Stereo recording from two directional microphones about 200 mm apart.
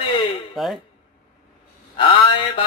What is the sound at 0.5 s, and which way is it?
Speech, centre (ahead or behind).